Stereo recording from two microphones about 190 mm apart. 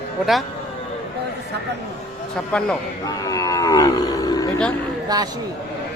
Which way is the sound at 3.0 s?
20° left (ahead or behind).